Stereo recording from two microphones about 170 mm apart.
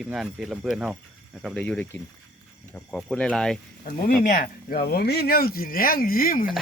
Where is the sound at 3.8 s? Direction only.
50° left (ahead or behind).